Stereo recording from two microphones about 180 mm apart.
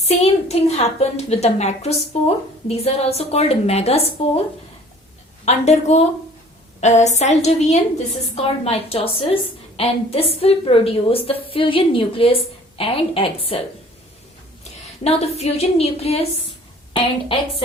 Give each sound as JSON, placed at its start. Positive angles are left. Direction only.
{"t": 0.0, "sound": "a woman's voice", "side_deg": 35}
{"t": 5.5, "sound": "a woman's voice", "side_deg": 35}
{"t": 15.0, "sound": "a woman's voice", "side_deg": 35}